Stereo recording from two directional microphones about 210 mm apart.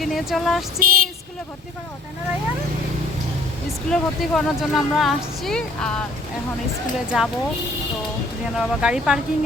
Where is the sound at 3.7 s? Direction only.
Centre (ahead or behind).